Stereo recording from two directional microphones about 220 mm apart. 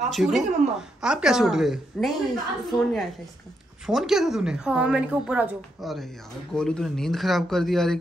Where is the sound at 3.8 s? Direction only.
Centre (ahead or behind).